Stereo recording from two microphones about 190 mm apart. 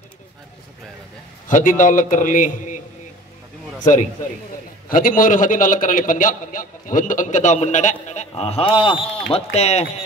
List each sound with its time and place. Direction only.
1.5 s a man's voice: 45° left (ahead or behind)
3.8 s a man's voice: 40° left (ahead or behind)